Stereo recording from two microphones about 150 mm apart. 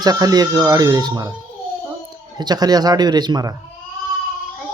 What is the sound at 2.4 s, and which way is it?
Speech, 25° right (ahead or behind).